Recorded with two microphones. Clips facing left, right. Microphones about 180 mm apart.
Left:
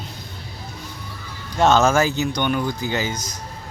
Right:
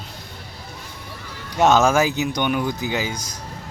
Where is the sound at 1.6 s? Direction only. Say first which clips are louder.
Even; 10° right (ahead or behind).